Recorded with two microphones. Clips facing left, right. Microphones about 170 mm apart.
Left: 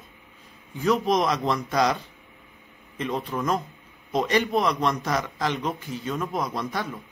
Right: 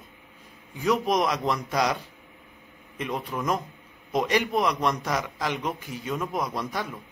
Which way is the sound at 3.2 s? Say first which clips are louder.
Left 2 dB; 10° right (ahead or behind).